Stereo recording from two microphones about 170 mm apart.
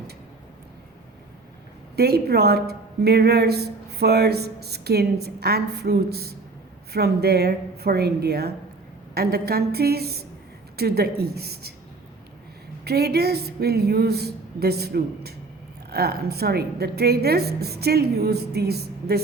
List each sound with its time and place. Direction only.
2.0 s a woman's voice: 70° right (ahead or behind)
12.8 s a woman's voice: 70° right (ahead or behind)